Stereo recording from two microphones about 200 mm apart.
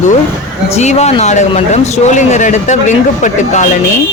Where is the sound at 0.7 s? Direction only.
35° left (ahead or behind).